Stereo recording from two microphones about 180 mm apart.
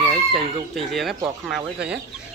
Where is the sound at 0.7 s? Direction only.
Centre (ahead or behind).